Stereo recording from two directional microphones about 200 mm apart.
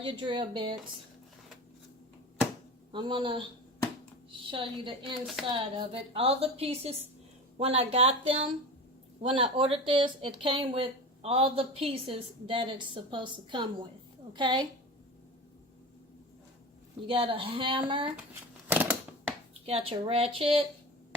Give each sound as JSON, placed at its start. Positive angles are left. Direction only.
{"t": 0.0, "sound": "speech", "side_deg": -25}
{"t": 2.9, "sound": "speech", "side_deg": -25}
{"t": 5.2, "sound": "speech", "side_deg": 0}
{"t": 5.5, "sound": "speech", "side_deg": -25}
{"t": 17.1, "sound": "speech", "side_deg": -25}
{"t": 18.7, "sound": "a sound", "side_deg": -10}
{"t": 19.6, "sound": "speech", "side_deg": -30}